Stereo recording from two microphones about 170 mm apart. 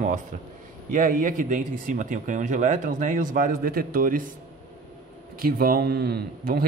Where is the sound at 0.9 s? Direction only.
50° right (ahead or behind).